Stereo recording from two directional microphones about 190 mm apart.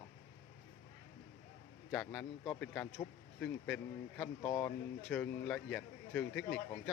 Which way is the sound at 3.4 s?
5° left (ahead or behind).